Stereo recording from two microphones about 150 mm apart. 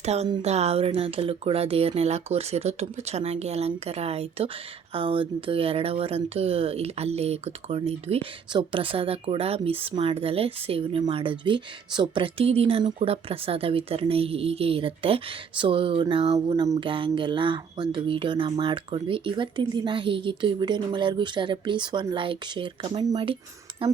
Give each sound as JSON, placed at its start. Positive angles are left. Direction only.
{"t": 0.0, "sound": "speech", "side_deg": -45}